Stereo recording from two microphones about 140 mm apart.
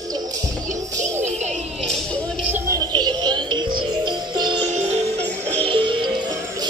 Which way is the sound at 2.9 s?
30° right (ahead or behind).